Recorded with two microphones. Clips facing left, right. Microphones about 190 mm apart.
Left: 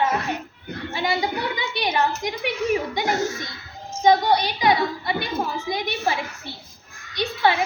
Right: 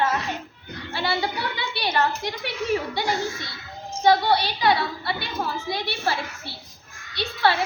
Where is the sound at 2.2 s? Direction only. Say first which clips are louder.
Left 4 dB; 15° left (ahead or behind).